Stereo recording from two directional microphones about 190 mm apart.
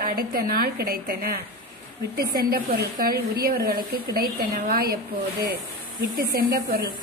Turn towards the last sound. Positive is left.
turn(degrees=-55)  # may be behind; listen again after turning